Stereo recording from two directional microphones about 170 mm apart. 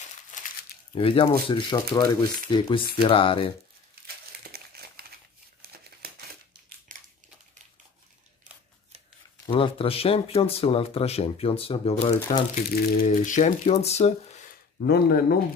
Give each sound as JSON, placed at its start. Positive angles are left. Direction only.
{"t": 0.9, "sound": "speech", "side_deg": 30}
{"t": 4.4, "sound": "crumpling", "side_deg": -65}
{"t": 5.6, "sound": "a sound", "side_deg": -65}
{"t": 6.9, "sound": "crumpling", "side_deg": -50}
{"t": 9.5, "sound": "speech", "side_deg": 35}
{"t": 12.5, "sound": "speech", "side_deg": 60}
{"t": 14.5, "sound": "a sound", "side_deg": 60}